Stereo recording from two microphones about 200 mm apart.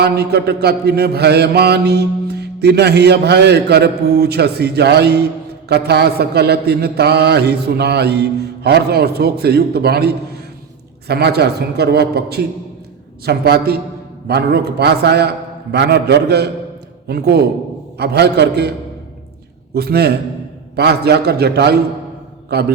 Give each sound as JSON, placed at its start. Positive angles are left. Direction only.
{"t": 0.0, "sound": "mantra", "side_deg": -55}
{"t": 19.7, "sound": "mantra", "side_deg": -50}